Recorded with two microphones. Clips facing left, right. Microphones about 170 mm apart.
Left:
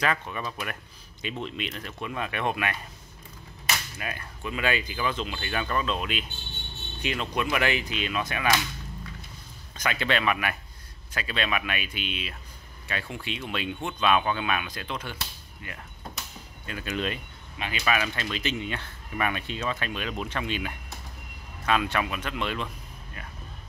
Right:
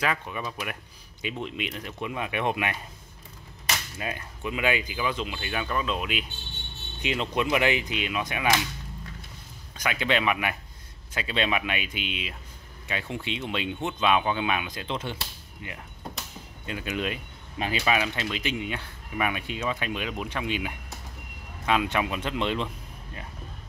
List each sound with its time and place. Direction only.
0.0 s speech: 5° right (ahead or behind)
4.0 s speech: 20° right (ahead or behind)
9.8 s speech: 10° right (ahead or behind)
17.6 s speech: 35° right (ahead or behind)
17.8 s speech: 20° right (ahead or behind)